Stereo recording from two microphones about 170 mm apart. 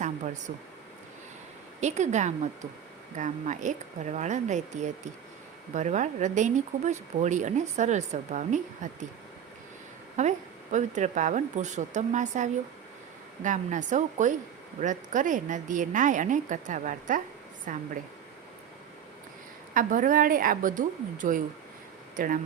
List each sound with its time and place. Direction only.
1.8 s speech: 45° right (ahead or behind)
10.2 s speech: 45° right (ahead or behind)
19.7 s speech: 50° right (ahead or behind)